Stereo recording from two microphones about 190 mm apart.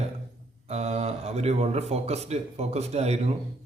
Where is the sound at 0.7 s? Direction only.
35° right (ahead or behind).